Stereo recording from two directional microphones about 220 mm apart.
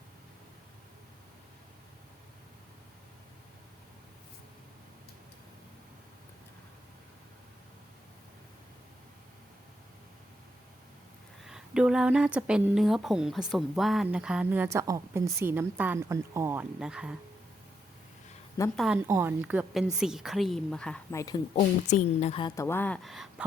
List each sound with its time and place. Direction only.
11.4 s a woman's voice: 5° right (ahead or behind)
18.6 s a woman's voice: 15° left (ahead or behind)
18.9 s a woman's voice: 10° right (ahead or behind); by 21.4 s 15° left (ahead or behind)
21.5 s a woman's voice: 35° left (ahead or behind); by 23.3 s centre (ahead or behind)